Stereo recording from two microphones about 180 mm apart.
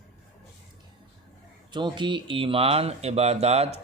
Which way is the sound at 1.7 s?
25° right (ahead or behind).